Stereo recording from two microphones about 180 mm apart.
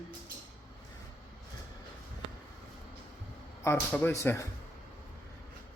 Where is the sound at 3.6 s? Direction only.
10° left (ahead or behind).